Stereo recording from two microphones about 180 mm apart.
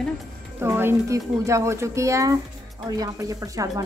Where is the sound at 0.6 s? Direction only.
15° right (ahead or behind).